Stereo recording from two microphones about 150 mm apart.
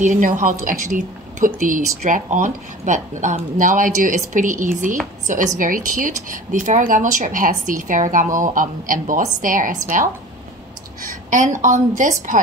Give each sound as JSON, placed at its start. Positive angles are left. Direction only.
{"t": 0.0, "sound": "speech", "side_deg": -60}
{"t": 11.2, "sound": "speech", "side_deg": -60}